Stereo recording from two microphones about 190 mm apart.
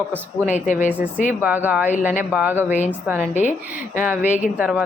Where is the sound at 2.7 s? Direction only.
40° left (ahead or behind).